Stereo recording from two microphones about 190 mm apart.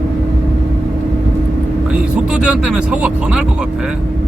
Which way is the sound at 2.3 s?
5° right (ahead or behind).